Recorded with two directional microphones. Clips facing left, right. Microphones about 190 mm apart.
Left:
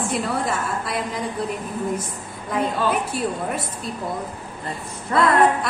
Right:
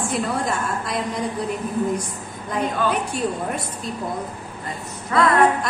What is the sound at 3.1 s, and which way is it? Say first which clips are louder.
Speech: right 1 dB; 5° left (ahead or behind).